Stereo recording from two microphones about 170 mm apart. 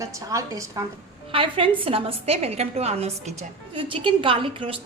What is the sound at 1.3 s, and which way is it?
A woman's voice, 30° right (ahead or behind).